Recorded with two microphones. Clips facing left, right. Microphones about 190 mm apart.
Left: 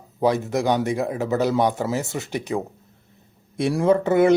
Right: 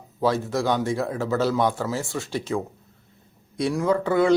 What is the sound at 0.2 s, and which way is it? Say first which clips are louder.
Speech: left 2 dB; 20° left (ahead or behind).